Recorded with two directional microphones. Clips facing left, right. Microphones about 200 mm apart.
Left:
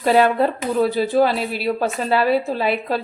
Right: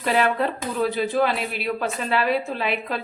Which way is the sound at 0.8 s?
35° left (ahead or behind).